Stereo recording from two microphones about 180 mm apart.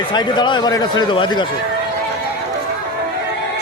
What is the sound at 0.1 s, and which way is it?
Speech, 25° left (ahead or behind).